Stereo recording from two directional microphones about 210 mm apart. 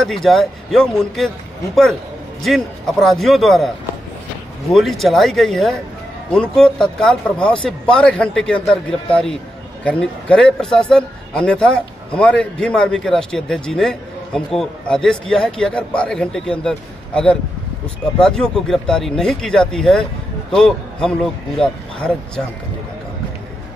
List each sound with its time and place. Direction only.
0.0 s a man's voice: centre (ahead or behind)
2.4 s a man's voice: centre (ahead or behind)
4.7 s a man's voice: centre (ahead or behind)